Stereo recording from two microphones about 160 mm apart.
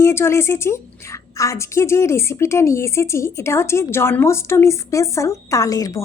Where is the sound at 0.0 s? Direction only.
15° left (ahead or behind).